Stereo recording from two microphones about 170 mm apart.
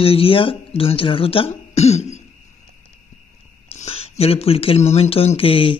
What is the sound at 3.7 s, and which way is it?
Speech, 35° left (ahead or behind).